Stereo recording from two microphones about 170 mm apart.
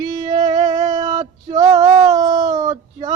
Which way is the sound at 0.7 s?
40° right (ahead or behind).